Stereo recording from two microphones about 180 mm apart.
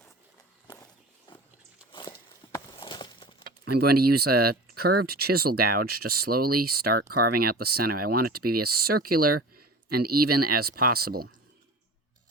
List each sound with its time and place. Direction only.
1.3 s pig: 25° left (ahead or behind)
1.9 s walk: 25° left (ahead or behind)
2.7 s a sound: 25° left (ahead or behind)
3.8 s speech: 60° right (ahead or behind)